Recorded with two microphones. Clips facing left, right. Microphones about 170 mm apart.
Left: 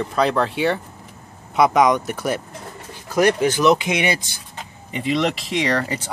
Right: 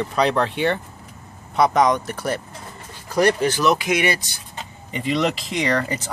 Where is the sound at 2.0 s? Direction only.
10° left (ahead or behind).